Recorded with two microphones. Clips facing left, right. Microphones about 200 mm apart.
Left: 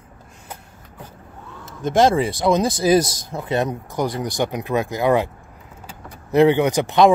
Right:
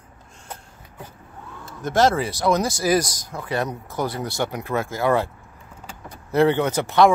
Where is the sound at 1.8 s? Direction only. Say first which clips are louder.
Left 3 dB; 25° left (ahead or behind).